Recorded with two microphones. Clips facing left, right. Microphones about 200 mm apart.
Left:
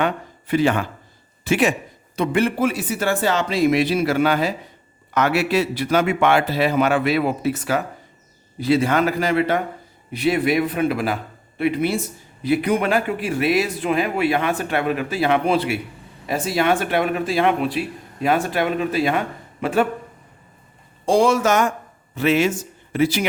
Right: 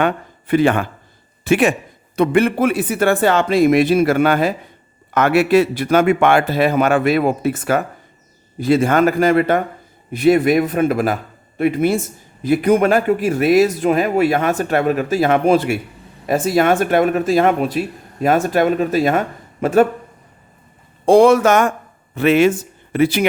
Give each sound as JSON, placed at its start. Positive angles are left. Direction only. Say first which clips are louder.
{"t": 0.0, "sound": "a sound", "louder": "right 4 dB", "side_deg": -55}
{"t": 1.5, "sound": "a man's voice", "louder": "right 4 dB", "side_deg": -55}
{"t": 21.0, "sound": "speech", "louder": "right 7 dB", "side_deg": -60}